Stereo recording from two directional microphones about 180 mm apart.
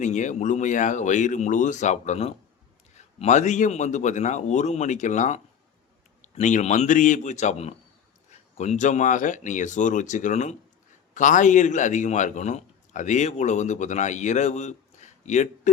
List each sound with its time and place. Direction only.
0.0 s a man's voice: 40° left (ahead or behind)